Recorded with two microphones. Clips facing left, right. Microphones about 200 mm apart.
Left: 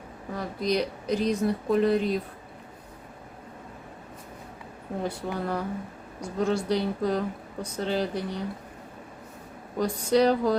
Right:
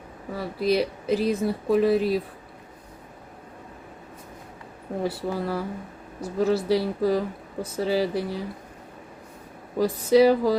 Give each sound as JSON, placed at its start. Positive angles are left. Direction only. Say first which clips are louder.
{"t": 0.3, "sound": "speech", "louder": "right 4 dB", "side_deg": -5}
{"t": 5.0, "sound": "speech", "louder": "right 3 dB", "side_deg": -5}
{"t": 9.7, "sound": "speech", "louder": "right 4 dB", "side_deg": -5}